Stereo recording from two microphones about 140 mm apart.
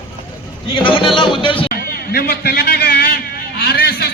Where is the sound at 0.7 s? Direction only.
35° left (ahead or behind).